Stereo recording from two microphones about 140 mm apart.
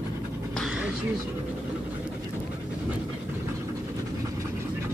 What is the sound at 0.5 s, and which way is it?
Dog, centre (ahead or behind).